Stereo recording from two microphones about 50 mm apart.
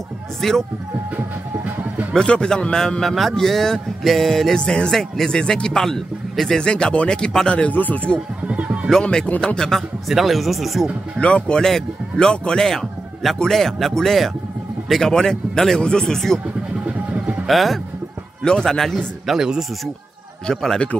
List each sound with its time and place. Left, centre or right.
0.4 s speech: centre
2.1 s speech: centre
6.7 s speech: left
7.7 s speech: left
8.5 s a sound: right
9.0 s speech: centre
10.0 s speech: centre
11.1 s speech: left
17.5 s speech: centre
18.4 s speech: centre
19.2 s speech: centre
20.4 s speech: centre